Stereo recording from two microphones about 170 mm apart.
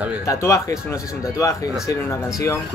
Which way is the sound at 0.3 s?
20° left (ahead or behind).